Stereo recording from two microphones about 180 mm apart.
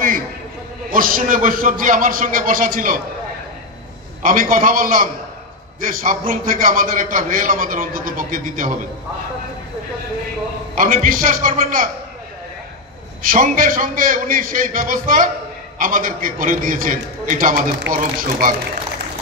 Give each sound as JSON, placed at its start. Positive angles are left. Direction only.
{"t": 0.8, "sound": "a man's voice", "side_deg": -50}
{"t": 4.2, "sound": "a man's voice", "side_deg": -50}
{"t": 10.7, "sound": "a man's voice", "side_deg": -50}
{"t": 13.2, "sound": "a man's voice", "side_deg": -50}